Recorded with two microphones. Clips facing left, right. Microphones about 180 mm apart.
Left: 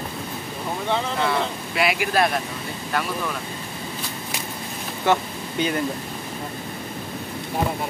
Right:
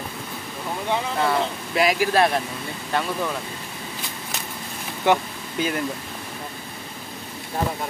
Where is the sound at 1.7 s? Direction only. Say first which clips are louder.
Right 2 dB; 35° right (ahead or behind).